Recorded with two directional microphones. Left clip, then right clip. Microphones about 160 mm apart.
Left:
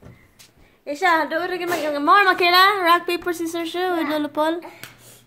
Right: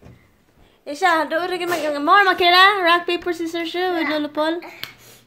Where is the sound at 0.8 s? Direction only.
10° right (ahead or behind).